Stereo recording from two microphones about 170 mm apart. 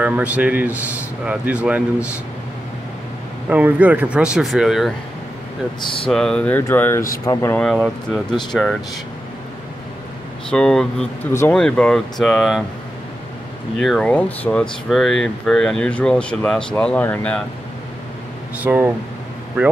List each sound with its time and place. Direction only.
0.0 s a man's voice: 10° right (ahead or behind)
3.4 s speech: 10° right (ahead or behind)
6.0 s speech: 5° left (ahead or behind)
7.6 s speech: centre (ahead or behind)
10.5 s speech: 5° left (ahead or behind)
13.7 s speech: centre (ahead or behind)
18.6 s a man's voice: 10° right (ahead or behind)